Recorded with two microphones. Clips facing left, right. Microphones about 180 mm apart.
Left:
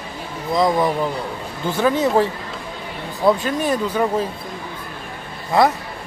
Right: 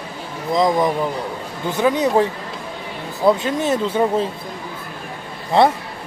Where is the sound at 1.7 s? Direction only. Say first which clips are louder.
Even; 15° right (ahead or behind).